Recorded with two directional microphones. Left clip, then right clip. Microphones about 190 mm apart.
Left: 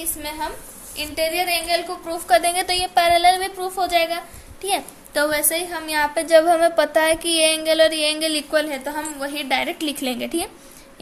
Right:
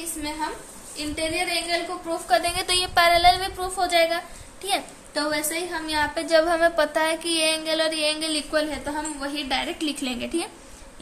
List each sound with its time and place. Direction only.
0.9 s a woman's voice: 55° left (ahead or behind)
2.2 s a woman's voice: 35° left (ahead or behind)
2.6 s a woman's voice: 5° left (ahead or behind)
5.1 s a woman's voice: 45° left (ahead or behind)
6.2 s a sound: 20° left (ahead or behind)